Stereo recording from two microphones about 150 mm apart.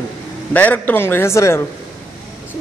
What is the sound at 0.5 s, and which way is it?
Speech, 10° left (ahead or behind).